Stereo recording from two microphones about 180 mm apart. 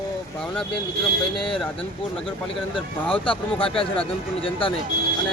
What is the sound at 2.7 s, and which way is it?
Speech, 30° left (ahead or behind).